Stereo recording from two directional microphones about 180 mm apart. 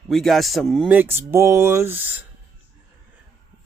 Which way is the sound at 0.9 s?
10° right (ahead or behind).